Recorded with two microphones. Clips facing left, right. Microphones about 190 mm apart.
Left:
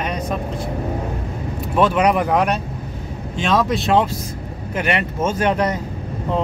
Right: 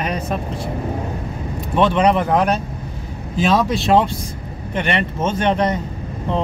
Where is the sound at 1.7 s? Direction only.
5° left (ahead or behind).